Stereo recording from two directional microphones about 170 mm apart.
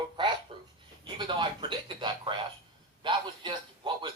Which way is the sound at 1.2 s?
30° right (ahead or behind).